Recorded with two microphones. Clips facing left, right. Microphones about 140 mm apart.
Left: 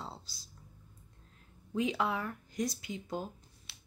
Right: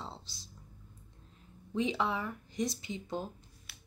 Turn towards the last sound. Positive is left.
turn(degrees=25)  # may be behind; listen again after turning